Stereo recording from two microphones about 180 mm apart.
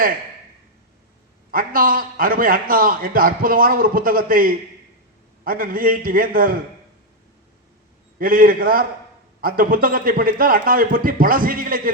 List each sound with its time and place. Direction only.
1.5 s a man's voice: 50° right (ahead or behind)
8.2 s a man's voice: 50° right (ahead or behind)